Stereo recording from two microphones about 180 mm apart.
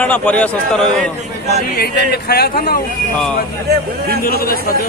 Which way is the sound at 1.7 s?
60° left (ahead or behind).